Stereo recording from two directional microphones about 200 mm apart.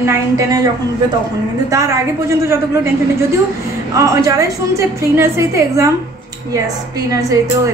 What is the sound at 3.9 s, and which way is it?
A woman's voice, 15° right (ahead or behind).